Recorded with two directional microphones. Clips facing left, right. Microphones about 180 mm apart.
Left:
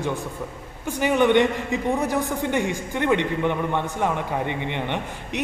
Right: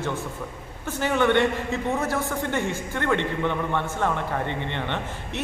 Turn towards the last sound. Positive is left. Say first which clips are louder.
# left 2 dB
turn(degrees=15)  # may be behind; listen again after turning